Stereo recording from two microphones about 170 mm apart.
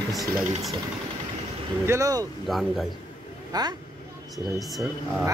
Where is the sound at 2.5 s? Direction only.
Centre (ahead or behind).